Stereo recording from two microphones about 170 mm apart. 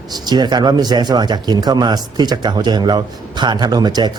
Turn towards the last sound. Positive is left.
turn(degrees=-25)  # may be behind; listen again after turning